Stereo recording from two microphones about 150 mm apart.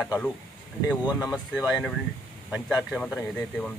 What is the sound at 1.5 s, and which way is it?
Speech, 25° left (ahead or behind).